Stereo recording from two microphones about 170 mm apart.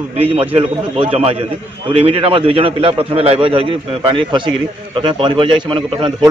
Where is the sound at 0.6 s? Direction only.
35° right (ahead or behind).